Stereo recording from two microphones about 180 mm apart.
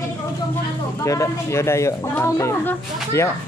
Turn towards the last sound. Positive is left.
turn(degrees=15)  # may be behind; listen again after turning